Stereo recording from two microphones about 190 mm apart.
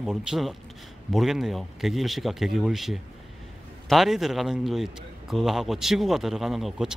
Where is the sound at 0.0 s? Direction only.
5° right (ahead or behind).